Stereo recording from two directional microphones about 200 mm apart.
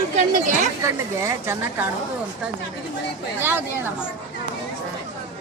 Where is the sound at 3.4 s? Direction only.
10° right (ahead or behind).